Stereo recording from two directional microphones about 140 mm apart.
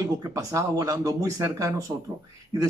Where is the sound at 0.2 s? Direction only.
25° right (ahead or behind).